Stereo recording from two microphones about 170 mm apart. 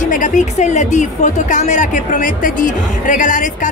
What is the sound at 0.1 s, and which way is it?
Speech, 50° left (ahead or behind).